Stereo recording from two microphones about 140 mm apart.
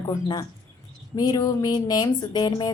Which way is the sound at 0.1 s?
25° left (ahead or behind).